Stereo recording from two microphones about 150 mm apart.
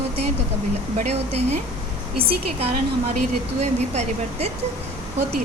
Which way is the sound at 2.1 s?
40° right (ahead or behind).